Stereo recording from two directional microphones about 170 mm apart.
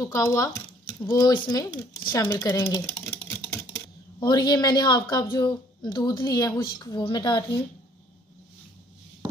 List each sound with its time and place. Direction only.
0.0 s speech: 20° left (ahead or behind)
4.2 s a woman's voice: 25° left (ahead or behind)